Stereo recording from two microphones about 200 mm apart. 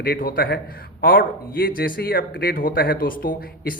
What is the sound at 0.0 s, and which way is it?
A man's voice, 45° left (ahead or behind).